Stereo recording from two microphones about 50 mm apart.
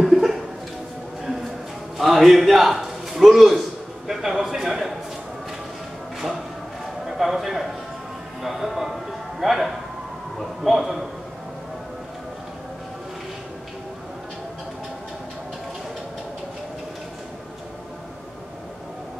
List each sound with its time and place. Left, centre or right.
0.0 s music: centre
2.0 s a man's voice: centre
7.1 s a man's voice: centre